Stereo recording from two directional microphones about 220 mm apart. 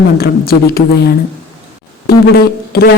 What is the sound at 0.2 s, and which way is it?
Speech, 45° left (ahead or behind).